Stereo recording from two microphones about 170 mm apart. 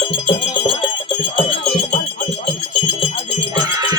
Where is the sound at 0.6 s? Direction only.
30° left (ahead or behind).